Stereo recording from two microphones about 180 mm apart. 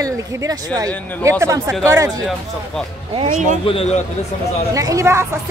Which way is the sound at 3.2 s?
40° right (ahead or behind).